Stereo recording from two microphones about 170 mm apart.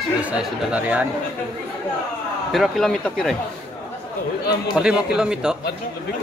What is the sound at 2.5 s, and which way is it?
Speech, centre (ahead or behind).